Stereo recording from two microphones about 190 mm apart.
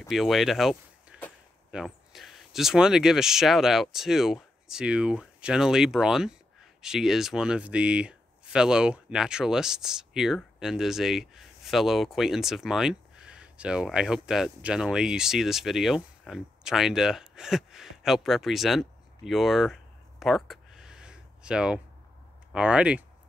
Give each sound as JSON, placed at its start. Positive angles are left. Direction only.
{"t": 0.1, "sound": "speech", "side_deg": 0}